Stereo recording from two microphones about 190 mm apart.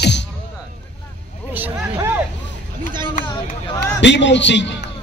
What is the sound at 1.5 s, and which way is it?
Hubbub, 10° right (ahead or behind).